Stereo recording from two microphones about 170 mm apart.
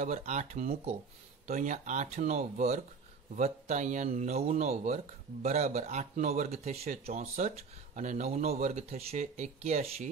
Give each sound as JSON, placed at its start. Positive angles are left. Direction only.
{"t": 0.0, "sound": "speech", "side_deg": -40}